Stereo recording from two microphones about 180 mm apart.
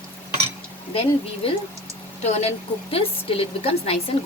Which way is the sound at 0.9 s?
30° left (ahead or behind).